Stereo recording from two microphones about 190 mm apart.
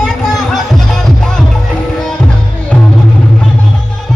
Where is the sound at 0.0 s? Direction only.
Centre (ahead or behind).